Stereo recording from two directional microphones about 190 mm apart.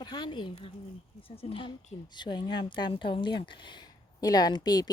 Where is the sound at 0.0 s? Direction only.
25° left (ahead or behind).